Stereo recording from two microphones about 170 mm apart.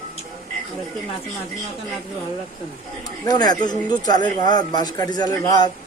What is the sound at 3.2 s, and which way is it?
Speech, 25° left (ahead or behind).